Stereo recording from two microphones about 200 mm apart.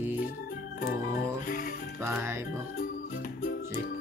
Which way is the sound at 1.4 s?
45° left (ahead or behind).